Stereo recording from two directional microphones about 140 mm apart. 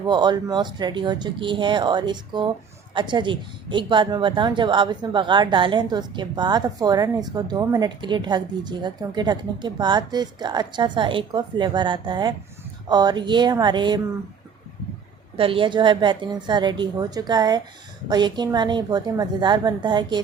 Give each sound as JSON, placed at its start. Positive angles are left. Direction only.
{"t": 0.0, "sound": "a woman's voice", "side_deg": -30}
{"t": 15.4, "sound": "a woman's voice", "side_deg": -40}